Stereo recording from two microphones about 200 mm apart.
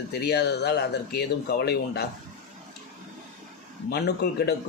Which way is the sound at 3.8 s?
55° left (ahead or behind).